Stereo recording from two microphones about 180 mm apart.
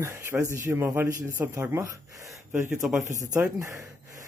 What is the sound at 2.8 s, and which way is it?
Speech, 5° right (ahead or behind).